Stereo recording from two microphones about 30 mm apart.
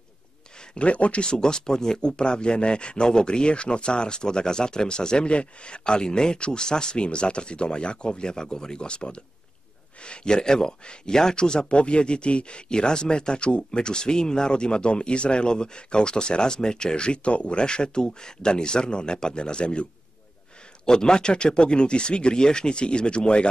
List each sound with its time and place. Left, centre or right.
0.7 s speech: left
1.2 s speech: left
20.8 s speech: left